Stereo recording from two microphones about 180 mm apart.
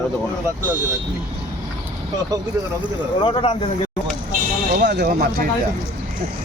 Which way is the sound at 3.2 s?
30° left (ahead or behind).